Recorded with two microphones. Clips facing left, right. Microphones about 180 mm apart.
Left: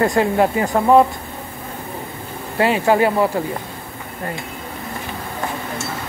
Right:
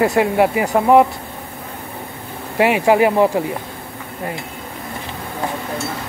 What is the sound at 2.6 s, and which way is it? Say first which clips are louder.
Speech: right 2 dB; 15° right (ahead or behind).